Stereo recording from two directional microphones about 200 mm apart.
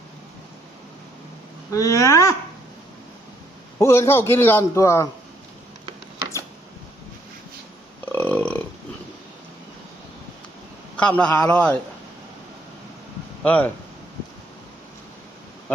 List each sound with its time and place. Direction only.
1.7 s a man's voice: 15° left (ahead or behind)
3.8 s a man's voice: 15° left (ahead or behind)
8.0 s burping: 10° left (ahead or behind)
10.9 s a man's voice: 5° left (ahead or behind)
13.4 s speech: 5° left (ahead or behind)